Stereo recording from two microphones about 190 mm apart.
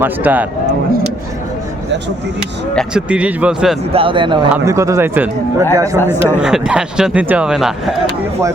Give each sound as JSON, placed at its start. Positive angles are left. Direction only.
{"t": 0.0, "sound": "a man's voice", "side_deg": -10}
{"t": 2.7, "sound": "a man's voice", "side_deg": -5}
{"t": 3.9, "sound": "speech", "side_deg": -25}
{"t": 4.4, "sound": "a man's voice", "side_deg": -10}
{"t": 6.4, "sound": "a man's voice", "side_deg": -5}